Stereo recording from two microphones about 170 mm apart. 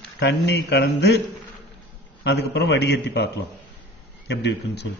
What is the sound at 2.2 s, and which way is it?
A man's voice, 80° left.